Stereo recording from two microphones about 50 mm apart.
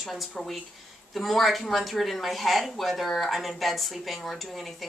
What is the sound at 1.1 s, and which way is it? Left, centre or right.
Speech, centre.